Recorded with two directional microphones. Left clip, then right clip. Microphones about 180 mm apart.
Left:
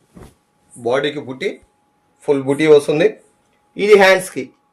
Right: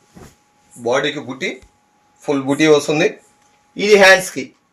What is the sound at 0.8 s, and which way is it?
Speech, 30° left (ahead or behind).